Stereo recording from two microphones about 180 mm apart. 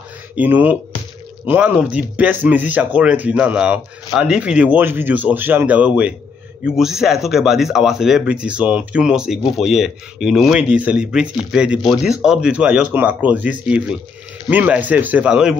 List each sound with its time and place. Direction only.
0.4 s speech: 10° right (ahead or behind)